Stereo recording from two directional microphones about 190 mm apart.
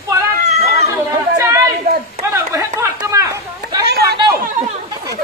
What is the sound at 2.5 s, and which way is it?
Chatter, 15° right (ahead or behind).